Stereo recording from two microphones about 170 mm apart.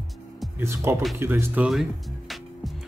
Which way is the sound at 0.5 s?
15° right (ahead or behind).